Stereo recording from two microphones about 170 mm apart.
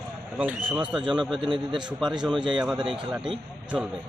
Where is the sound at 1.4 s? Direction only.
30° right (ahead or behind).